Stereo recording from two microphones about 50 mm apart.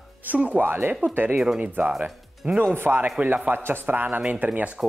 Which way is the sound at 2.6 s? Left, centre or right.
Right.